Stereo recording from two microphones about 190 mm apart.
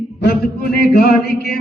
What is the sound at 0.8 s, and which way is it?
Music, 55° left (ahead or behind).